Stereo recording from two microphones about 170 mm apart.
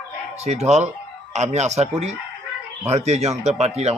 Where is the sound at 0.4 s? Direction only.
40° right (ahead or behind).